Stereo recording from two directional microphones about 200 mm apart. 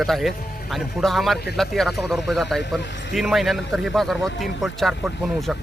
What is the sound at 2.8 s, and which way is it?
Speech, 65° left (ahead or behind).